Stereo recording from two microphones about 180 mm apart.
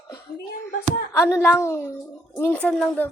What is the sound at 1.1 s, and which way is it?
Speech, 10° left (ahead or behind).